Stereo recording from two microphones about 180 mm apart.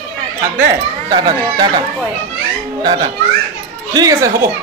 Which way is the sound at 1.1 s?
25° right (ahead or behind).